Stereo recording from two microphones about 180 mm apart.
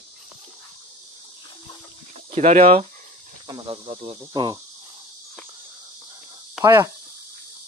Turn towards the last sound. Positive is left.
turn(degrees=-15)  # may be behind; listen again after turning